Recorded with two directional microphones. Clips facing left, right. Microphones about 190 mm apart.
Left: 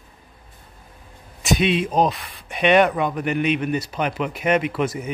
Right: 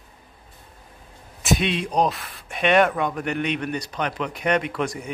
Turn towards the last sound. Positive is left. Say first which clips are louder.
# left 3 dB
turn(degrees=5)  # may be behind; listen again after turning